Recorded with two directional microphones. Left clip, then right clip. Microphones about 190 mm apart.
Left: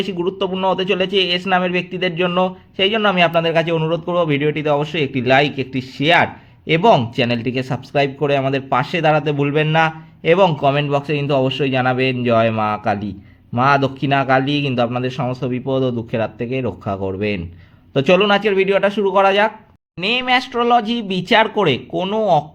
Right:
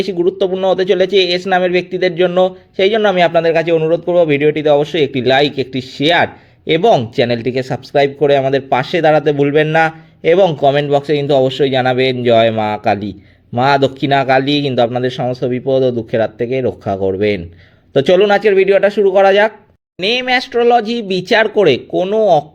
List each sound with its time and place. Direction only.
0.0 s a man's voice: 20° right (ahead or behind)